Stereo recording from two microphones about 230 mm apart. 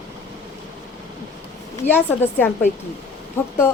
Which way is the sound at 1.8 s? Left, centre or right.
Left.